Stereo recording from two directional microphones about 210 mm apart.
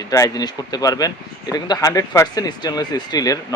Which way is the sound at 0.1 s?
15° left (ahead or behind).